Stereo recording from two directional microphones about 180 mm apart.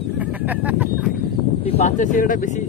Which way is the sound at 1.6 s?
35° left (ahead or behind).